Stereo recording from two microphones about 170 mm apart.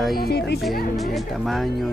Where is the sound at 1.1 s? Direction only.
Centre (ahead or behind).